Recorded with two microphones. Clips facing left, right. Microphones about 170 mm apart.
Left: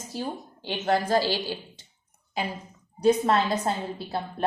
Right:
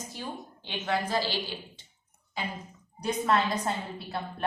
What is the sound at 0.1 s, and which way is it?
A woman's voice, 35° left (ahead or behind).